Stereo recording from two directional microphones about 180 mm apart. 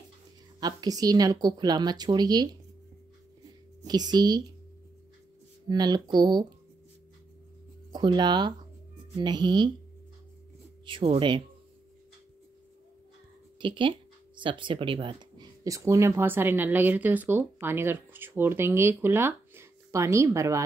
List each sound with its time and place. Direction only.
0.6 s speech: 20° right (ahead or behind)
3.8 s speech: 20° right (ahead or behind)
5.7 s speech: 25° right (ahead or behind)
7.9 s speech: 25° right (ahead or behind)
10.9 s speech: 30° right (ahead or behind)
13.6 s speech: 25° right (ahead or behind)